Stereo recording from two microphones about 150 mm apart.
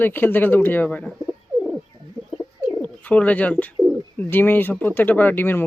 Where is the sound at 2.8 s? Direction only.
10° left (ahead or behind).